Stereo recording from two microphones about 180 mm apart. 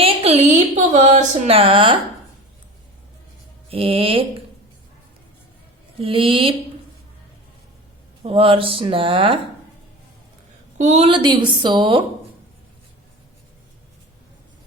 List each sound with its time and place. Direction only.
0.0 s speech: 35° right (ahead or behind)
3.7 s speech: 30° right (ahead or behind)
6.0 s a woman's voice: 30° right (ahead or behind)
8.2 s a woman's voice: 30° right (ahead or behind)
10.8 s a woman's voice: 40° right (ahead or behind)